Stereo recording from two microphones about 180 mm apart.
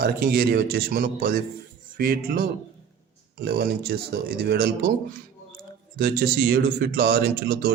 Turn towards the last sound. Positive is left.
turn(degrees=-55)  # may be behind; listen again after turning